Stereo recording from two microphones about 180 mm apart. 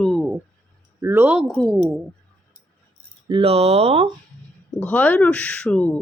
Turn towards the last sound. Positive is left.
turn(degrees=5)  # may be behind; listen again after turning